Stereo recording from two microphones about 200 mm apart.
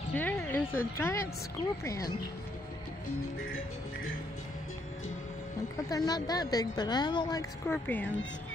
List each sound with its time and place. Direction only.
0.1 s music: 10° left (ahead or behind)
0.7 s a woman's voice: 15° left (ahead or behind)
5.9 s a woman's voice: 20° left (ahead or behind)